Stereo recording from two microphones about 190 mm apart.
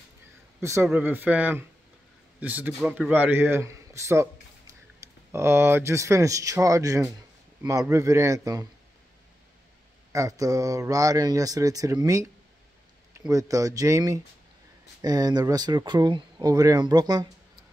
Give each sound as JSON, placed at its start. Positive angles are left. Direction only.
{"t": 0.6, "sound": "speech", "side_deg": -15}
{"t": 10.1, "sound": "speech", "side_deg": -20}
{"t": 13.3, "sound": "speech", "side_deg": -15}